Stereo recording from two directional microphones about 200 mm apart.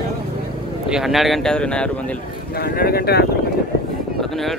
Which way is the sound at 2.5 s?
50° left (ahead or behind).